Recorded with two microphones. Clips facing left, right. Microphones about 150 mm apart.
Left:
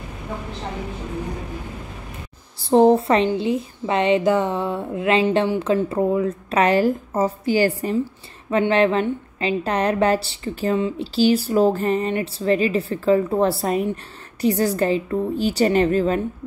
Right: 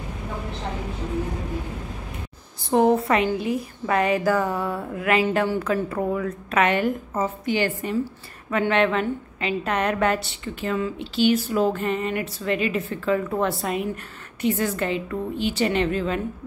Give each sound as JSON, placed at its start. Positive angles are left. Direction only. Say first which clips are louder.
{"t": 2.6, "sound": "a woman's voice", "louder": "left 4 dB", "side_deg": 30}